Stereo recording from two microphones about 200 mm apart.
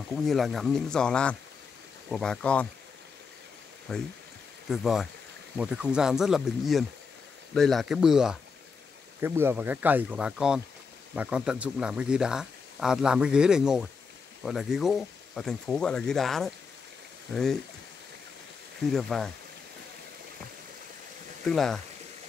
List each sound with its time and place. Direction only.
0.1 s speech: centre (ahead or behind)
3.9 s speech: centre (ahead or behind)
18.9 s speech: centre (ahead or behind)
21.5 s speech: centre (ahead or behind)